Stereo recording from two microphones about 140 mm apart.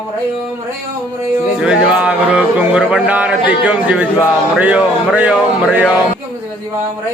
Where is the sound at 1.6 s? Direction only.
10° right (ahead or behind).